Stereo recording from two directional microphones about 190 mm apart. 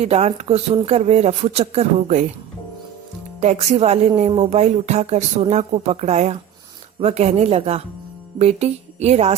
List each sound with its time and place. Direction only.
0.0 s a woman's voice: 35° right (ahead or behind)
3.4 s a woman's voice: 35° right (ahead or behind)